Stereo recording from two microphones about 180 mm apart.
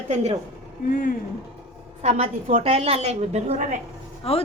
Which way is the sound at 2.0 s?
40° right (ahead or behind).